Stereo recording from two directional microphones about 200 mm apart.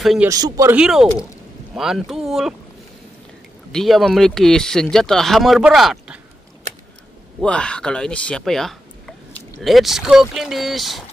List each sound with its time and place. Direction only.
0.0 s speech: centre (ahead or behind)
0.3 s a man's voice: 15° right (ahead or behind)
0.7 s speech: 5° right (ahead or behind)
3.7 s speech: centre (ahead or behind)
7.4 s speech: 5° left (ahead or behind)